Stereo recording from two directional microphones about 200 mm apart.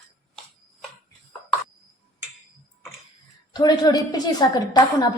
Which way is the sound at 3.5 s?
20° left (ahead or behind).